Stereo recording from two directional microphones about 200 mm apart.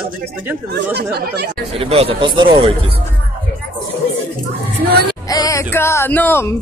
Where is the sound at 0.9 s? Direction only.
55° right (ahead or behind).